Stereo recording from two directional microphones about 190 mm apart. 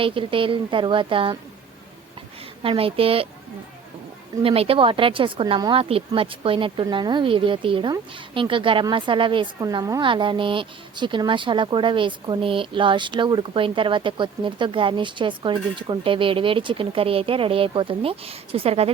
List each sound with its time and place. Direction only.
0.0 s speech: 25° right (ahead or behind)
2.6 s speech: 30° right (ahead or behind)
4.4 s speech: 30° right (ahead or behind)